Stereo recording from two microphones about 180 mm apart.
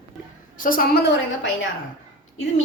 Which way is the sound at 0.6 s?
50° left (ahead or behind).